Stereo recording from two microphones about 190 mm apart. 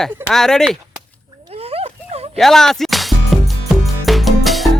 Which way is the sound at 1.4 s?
30° right (ahead or behind).